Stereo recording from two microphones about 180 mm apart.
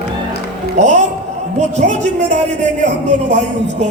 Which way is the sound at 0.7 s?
40° right (ahead or behind).